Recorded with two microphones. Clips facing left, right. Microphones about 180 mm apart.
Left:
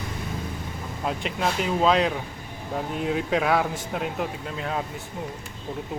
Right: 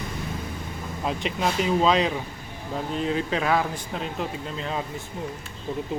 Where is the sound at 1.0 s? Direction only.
Centre (ahead or behind).